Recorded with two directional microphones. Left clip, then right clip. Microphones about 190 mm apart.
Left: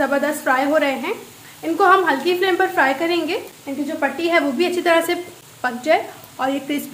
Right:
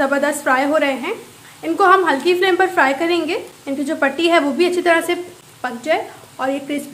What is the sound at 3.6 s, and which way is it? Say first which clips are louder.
A woman's voice: right 5 dB; 30° right (ahead or behind).